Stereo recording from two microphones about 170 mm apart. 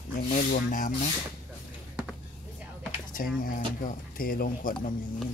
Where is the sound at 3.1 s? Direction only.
55° left (ahead or behind).